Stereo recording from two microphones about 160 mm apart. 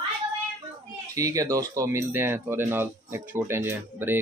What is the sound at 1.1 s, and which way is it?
Speech, 20° right (ahead or behind).